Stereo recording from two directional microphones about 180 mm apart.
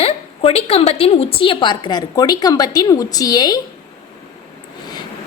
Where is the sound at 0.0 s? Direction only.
35° left (ahead or behind).